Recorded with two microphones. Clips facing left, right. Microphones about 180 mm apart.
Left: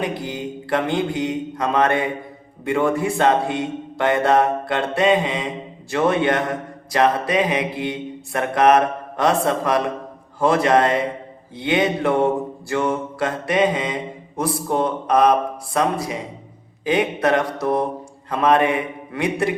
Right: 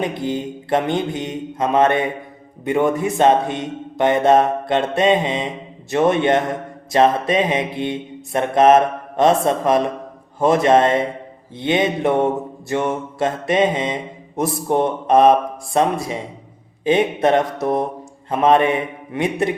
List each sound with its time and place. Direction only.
0.0 s mantra: 20° right (ahead or behind)